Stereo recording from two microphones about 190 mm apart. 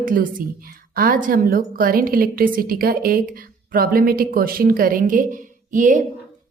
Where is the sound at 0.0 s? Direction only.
45° right (ahead or behind).